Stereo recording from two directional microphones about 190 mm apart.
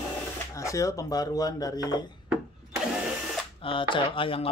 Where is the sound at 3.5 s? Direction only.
25° left (ahead or behind).